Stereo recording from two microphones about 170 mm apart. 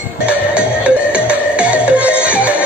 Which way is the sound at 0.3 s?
5° right (ahead or behind).